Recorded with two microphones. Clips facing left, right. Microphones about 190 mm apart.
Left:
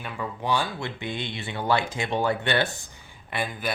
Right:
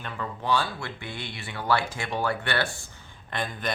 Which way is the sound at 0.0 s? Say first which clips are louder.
Left 2 dB; 10° left (ahead or behind).